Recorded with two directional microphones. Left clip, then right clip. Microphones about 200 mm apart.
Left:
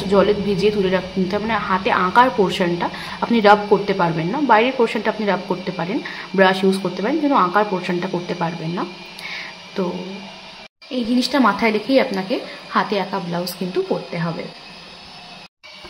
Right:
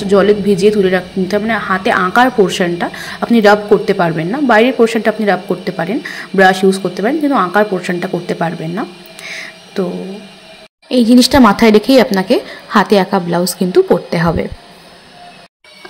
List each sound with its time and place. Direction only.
0.1 s a woman's voice: 20° right (ahead or behind)
10.9 s speech: 45° right (ahead or behind)